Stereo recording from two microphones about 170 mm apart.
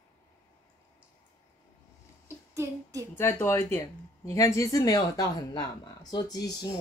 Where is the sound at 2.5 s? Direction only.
15° right (ahead or behind).